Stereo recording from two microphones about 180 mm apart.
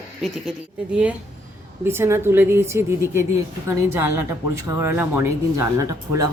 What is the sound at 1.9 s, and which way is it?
Speech, 15° right (ahead or behind).